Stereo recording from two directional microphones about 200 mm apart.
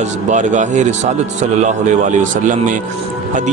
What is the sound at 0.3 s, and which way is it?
Speech, 40° right (ahead or behind).